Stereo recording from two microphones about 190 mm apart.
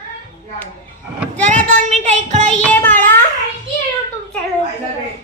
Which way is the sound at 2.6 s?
10° left (ahead or behind).